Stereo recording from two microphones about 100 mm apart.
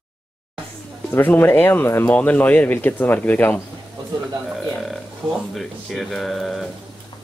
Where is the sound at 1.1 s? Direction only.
20° left (ahead or behind).